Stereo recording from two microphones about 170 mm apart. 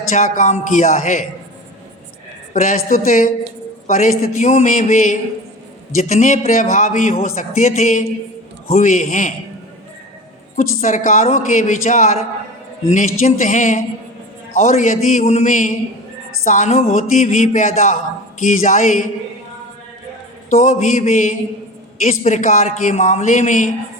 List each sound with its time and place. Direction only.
0.1 s a man's voice: 50° left (ahead or behind)
2.5 s a man's voice: 50° left (ahead or behind)
10.6 s a man's voice: 50° left (ahead or behind)
20.5 s a sound: 40° left (ahead or behind)
22.0 s a man's voice: 45° left (ahead or behind)